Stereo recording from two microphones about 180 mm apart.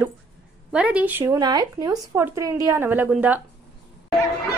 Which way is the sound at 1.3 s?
20° right (ahead or behind).